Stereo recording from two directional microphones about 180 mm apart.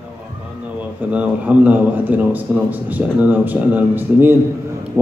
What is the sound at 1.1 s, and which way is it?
A man's voice, 5° right (ahead or behind).